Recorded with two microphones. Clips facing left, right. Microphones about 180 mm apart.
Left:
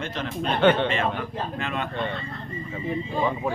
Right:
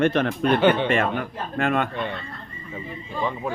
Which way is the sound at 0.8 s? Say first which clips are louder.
Right 3 dB; 55° right (ahead or behind).